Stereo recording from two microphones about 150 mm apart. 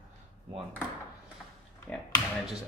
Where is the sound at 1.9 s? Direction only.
10° left (ahead or behind).